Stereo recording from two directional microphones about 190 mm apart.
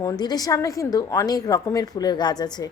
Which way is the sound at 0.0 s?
20° left (ahead or behind).